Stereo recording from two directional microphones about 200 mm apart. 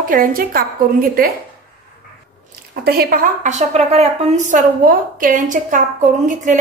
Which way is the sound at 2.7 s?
50° right (ahead or behind).